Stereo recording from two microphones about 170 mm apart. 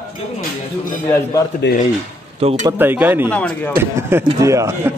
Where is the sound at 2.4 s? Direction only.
35° right (ahead or behind).